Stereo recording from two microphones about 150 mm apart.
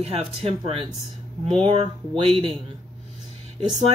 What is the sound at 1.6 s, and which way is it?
Speech, 40° right (ahead or behind).